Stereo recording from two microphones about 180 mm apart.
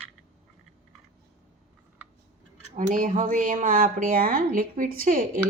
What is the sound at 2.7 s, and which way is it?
Speech, 45° right (ahead or behind).